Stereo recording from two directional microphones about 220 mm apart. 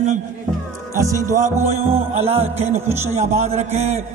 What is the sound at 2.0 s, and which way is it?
A man's voice, 30° right (ahead or behind).